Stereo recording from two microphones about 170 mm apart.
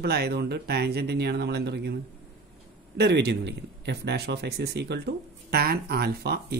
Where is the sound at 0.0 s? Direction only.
70° right (ahead or behind).